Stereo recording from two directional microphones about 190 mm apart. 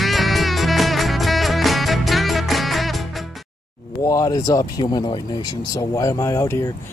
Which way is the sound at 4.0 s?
20° left (ahead or behind).